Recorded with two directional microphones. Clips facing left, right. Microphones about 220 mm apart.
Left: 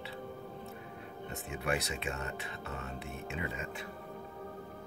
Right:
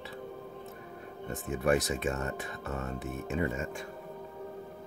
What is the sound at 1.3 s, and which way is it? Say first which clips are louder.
Speech: right 8 dB; 45° right (ahead or behind).